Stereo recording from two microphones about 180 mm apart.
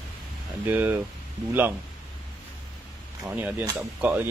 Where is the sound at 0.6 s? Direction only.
10° right (ahead or behind).